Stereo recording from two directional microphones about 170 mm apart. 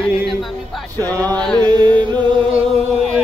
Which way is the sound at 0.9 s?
20° right (ahead or behind).